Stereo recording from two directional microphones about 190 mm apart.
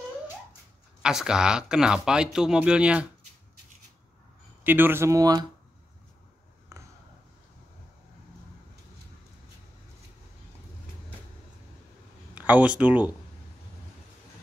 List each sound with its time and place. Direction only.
1.0 s speech: 5° right (ahead or behind)
4.6 s speech: 10° right (ahead or behind)
6.7 s a sound: 15° right (ahead or behind)
12.4 s speech: 5° right (ahead or behind)